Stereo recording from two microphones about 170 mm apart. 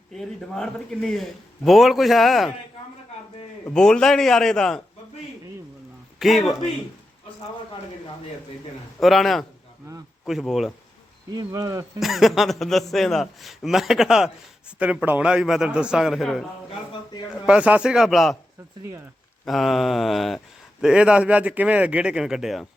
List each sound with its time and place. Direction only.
0.1 s speech: centre (ahead or behind)
3.7 s speech: 5° left (ahead or behind)
6.1 s a man's voice: centre (ahead or behind)
9.0 s speech: centre (ahead or behind)
11.3 s speech: 20° right (ahead or behind)
11.9 s speech: centre (ahead or behind)
19.5 s speech: centre (ahead or behind)